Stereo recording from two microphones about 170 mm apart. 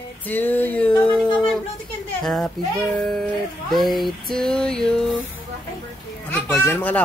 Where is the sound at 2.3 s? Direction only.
Centre (ahead or behind).